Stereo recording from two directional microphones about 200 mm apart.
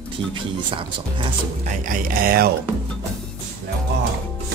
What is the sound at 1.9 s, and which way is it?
Speech, 45° right (ahead or behind).